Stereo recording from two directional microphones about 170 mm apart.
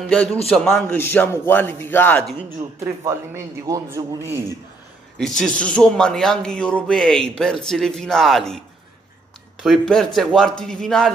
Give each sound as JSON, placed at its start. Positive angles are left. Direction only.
{"t": 0.1, "sound": "speech", "side_deg": 5}
{"t": 2.8, "sound": "a man's voice", "side_deg": -20}
{"t": 5.4, "sound": "speech", "side_deg": 5}
{"t": 9.6, "sound": "speech", "side_deg": 0}